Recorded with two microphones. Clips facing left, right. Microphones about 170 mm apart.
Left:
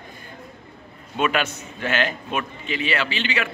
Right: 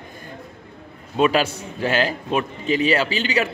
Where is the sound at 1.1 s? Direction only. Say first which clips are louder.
Right 5 dB; 30° right (ahead or behind).